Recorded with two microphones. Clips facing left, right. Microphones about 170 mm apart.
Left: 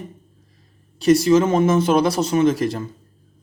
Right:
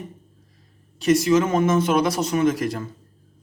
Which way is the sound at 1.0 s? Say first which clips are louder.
Left 3 dB; 35° left (ahead or behind).